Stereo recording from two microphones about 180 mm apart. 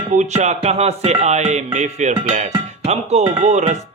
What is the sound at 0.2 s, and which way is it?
Speech, 40° right (ahead or behind).